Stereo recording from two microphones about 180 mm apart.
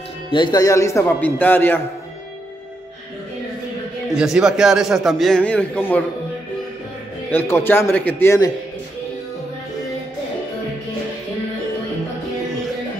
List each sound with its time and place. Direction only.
0.3 s speech: 25° left (ahead or behind)
4.1 s a man's voice: 5° right (ahead or behind)
7.2 s speech: 10° left (ahead or behind)